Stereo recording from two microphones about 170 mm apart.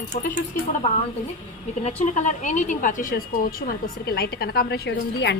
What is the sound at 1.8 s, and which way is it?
Speech, 45° left (ahead or behind).